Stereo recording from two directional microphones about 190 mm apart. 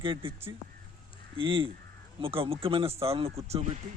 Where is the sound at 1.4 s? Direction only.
25° right (ahead or behind).